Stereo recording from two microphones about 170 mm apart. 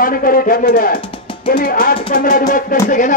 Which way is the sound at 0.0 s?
55° left (ahead or behind).